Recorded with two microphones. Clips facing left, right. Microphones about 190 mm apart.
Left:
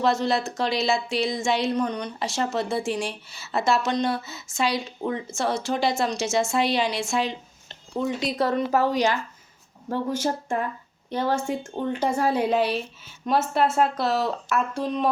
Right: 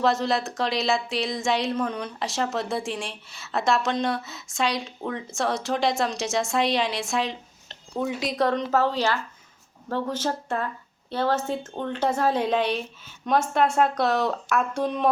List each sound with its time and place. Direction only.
0.0 s speech: centre (ahead or behind)